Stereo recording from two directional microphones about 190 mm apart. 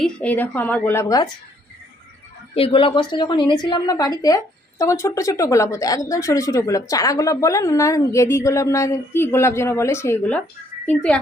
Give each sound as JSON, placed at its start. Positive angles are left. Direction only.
{"t": 0.0, "sound": "speech", "side_deg": 5}
{"t": 2.6, "sound": "a woman's voice", "side_deg": 30}